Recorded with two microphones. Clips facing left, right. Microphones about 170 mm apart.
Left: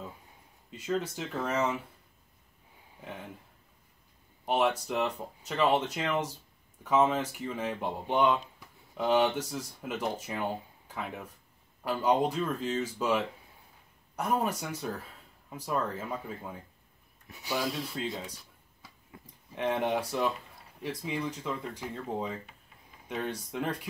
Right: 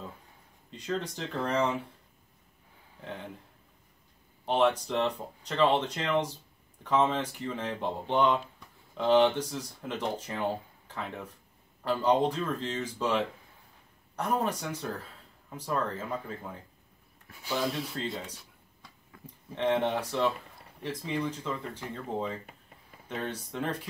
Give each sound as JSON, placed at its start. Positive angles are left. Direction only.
{"t": 0.7, "sound": "speech", "side_deg": 5}
{"t": 3.0, "sound": "speech", "side_deg": 10}
{"t": 4.5, "sound": "speech", "side_deg": 10}
{"t": 17.6, "sound": "speech", "side_deg": 0}
{"t": 19.1, "sound": "a sound", "side_deg": 25}
{"t": 19.5, "sound": "speech", "side_deg": 10}